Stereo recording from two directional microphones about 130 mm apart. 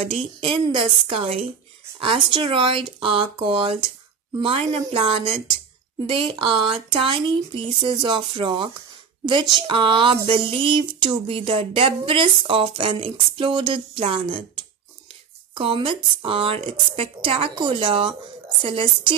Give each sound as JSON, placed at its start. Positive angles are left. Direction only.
{"t": 0.0, "sound": "speech", "side_deg": -50}